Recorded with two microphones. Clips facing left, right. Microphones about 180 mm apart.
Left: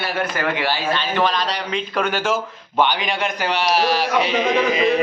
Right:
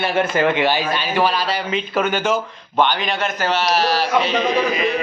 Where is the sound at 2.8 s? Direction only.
10° left (ahead or behind).